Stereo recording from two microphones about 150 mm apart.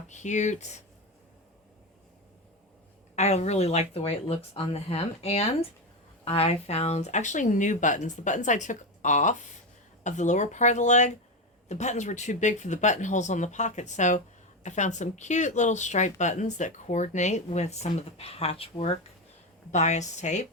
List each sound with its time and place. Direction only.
0.1 s speech: 50° left (ahead or behind)
3.2 s speech: 50° left (ahead or behind)
19.7 s speech: 50° left (ahead or behind)